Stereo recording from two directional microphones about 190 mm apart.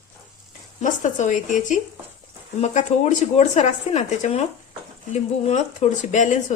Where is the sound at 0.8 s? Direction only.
40° left (ahead or behind).